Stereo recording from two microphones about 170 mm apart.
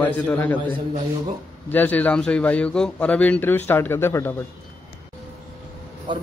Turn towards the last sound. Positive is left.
turn(degrees=-30)  # may be behind; listen again after turning